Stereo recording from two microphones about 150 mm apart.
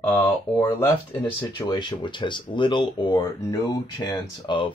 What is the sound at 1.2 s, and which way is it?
Speech, 30° left (ahead or behind).